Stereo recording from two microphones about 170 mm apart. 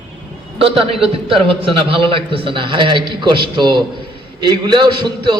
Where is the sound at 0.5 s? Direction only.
30° right (ahead or behind).